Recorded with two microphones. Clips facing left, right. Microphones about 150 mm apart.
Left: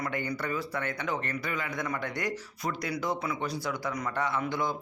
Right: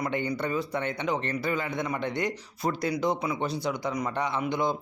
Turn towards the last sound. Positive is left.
turn(degrees=-20)  # may be behind; listen again after turning